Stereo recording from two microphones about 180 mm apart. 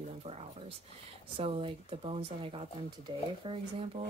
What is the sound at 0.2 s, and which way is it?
Speech, 35° right (ahead or behind).